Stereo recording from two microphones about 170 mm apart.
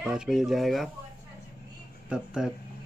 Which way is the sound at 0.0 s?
5° right (ahead or behind).